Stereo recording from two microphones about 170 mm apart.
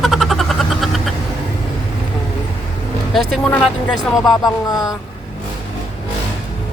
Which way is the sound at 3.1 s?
10° left (ahead or behind).